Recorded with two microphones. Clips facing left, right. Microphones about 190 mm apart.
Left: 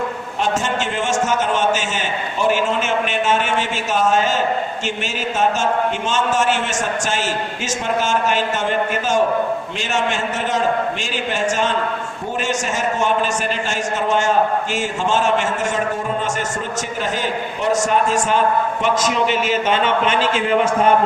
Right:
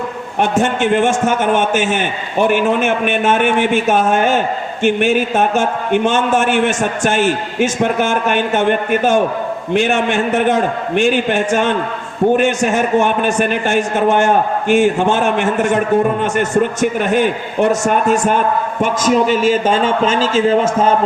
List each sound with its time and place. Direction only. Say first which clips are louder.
0.3 s a man's voice: right 6 dB; 60° right (ahead or behind); by 20.6 s 35° right (ahead or behind)